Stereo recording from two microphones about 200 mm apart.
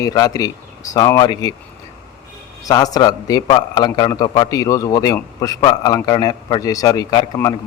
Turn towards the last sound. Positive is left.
turn(degrees=15)  # may be behind; listen again after turning